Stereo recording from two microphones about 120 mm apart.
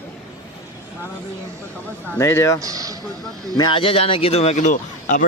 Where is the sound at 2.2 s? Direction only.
25° left (ahead or behind).